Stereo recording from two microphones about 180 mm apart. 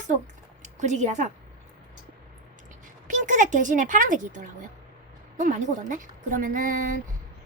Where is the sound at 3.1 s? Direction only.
45° right (ahead or behind).